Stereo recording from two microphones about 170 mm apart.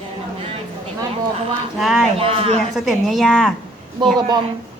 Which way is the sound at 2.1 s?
35° right (ahead or behind).